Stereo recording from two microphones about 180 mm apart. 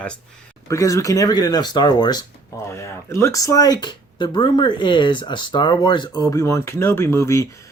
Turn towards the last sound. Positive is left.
turn(degrees=15)  # may be behind; listen again after turning